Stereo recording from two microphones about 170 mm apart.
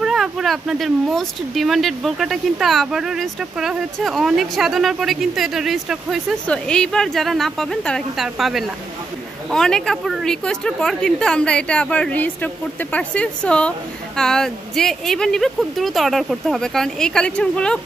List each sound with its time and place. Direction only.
0.0 s speech: centre (ahead or behind)